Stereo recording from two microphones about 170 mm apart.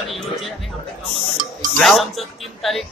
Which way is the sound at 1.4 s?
50° right (ahead or behind).